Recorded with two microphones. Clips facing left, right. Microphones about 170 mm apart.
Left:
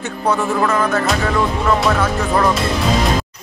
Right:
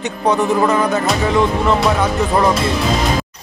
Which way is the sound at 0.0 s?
15° right (ahead or behind).